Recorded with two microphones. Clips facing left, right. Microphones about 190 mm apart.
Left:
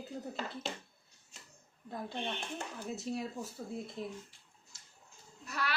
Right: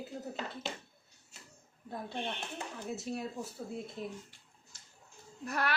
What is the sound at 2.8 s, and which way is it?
Speech, centre (ahead or behind).